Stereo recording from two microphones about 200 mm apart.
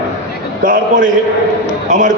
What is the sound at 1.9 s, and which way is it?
Speech, 40° right (ahead or behind).